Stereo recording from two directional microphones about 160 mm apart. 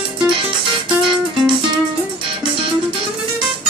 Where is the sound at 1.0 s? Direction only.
30° right (ahead or behind).